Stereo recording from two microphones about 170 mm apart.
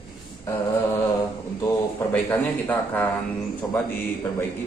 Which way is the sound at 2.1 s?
10° left (ahead or behind).